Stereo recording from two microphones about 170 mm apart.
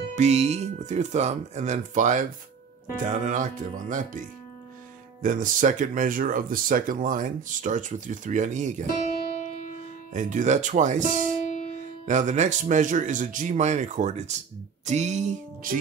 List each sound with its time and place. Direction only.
0.1 s speech: 40° right (ahead or behind)
5.2 s speech: 50° right (ahead or behind)
8.8 s music: 55° left (ahead or behind)
10.1 s speech: 45° right (ahead or behind)